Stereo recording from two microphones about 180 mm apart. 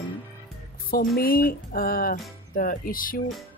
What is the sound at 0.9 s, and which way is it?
Speech, 55° left (ahead or behind).